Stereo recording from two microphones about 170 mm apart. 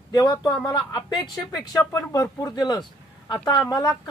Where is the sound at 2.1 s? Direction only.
20° left (ahead or behind).